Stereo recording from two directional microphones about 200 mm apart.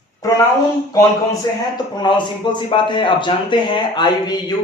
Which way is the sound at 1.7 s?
20° left (ahead or behind).